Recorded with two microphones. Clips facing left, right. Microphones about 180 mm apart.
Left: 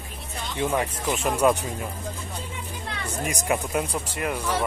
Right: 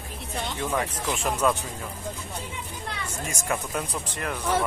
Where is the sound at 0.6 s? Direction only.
15° left (ahead or behind).